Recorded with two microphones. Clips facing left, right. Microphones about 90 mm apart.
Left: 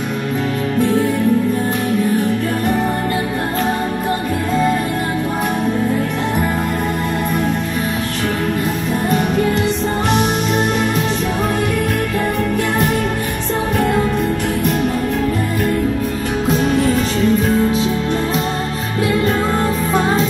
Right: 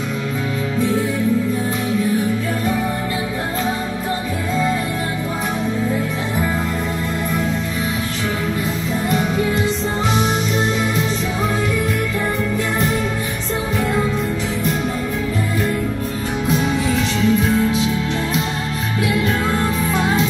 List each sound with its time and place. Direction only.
16.6 s music: 55° left (ahead or behind)
19.0 s music: 40° left (ahead or behind)